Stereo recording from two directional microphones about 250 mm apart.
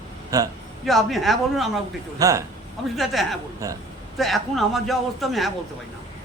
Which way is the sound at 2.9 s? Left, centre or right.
Centre.